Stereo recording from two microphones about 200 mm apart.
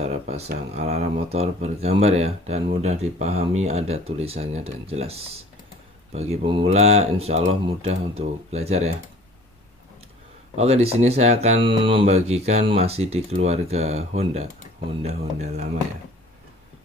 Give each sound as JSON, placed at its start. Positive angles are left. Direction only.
{"t": 0.0, "sound": "a sound", "side_deg": -30}
{"t": 0.7, "sound": "speech", "side_deg": -35}
{"t": 10.5, "sound": "speech", "side_deg": -30}